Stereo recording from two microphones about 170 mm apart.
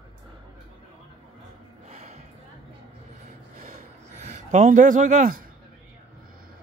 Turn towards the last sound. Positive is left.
turn(degrees=-50)  # may be behind; listen again after turning